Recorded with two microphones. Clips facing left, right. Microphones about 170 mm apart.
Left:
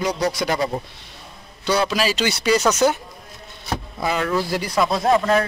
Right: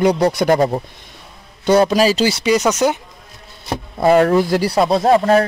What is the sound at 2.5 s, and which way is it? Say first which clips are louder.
Speech: right 3 dB; 15° right (ahead or behind).